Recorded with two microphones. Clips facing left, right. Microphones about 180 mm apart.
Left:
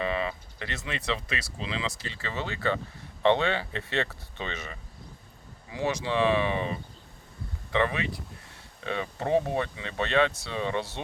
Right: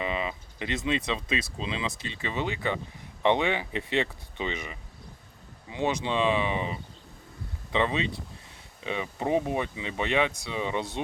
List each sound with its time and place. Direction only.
0.0 s speech: 15° right (ahead or behind)